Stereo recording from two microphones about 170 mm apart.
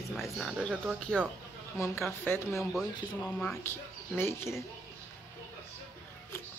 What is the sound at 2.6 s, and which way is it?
Speech, centre (ahead or behind).